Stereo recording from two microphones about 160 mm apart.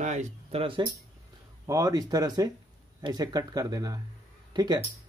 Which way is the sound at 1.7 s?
20° right (ahead or behind).